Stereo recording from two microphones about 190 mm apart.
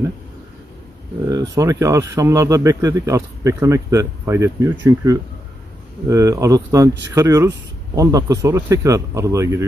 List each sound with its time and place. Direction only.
1.3 s speech: 20° right (ahead or behind)